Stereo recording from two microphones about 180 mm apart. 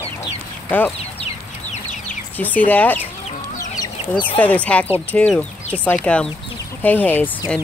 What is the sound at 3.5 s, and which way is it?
Chicken, 20° left (ahead or behind).